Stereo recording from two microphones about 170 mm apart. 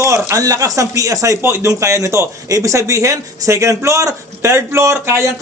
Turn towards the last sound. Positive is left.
turn(degrees=-15)  # may be behind; listen again after turning